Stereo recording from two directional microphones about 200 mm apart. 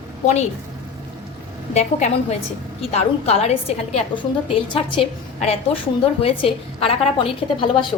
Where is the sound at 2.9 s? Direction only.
30° left (ahead or behind).